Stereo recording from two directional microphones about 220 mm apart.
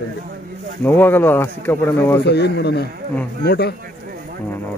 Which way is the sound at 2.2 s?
50° left (ahead or behind).